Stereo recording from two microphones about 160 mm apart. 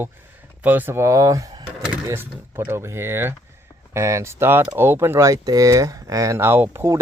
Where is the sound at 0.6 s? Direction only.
10° right (ahead or behind).